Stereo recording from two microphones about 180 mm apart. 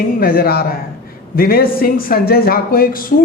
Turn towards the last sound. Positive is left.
turn(degrees=55)  # may be behind; listen again after turning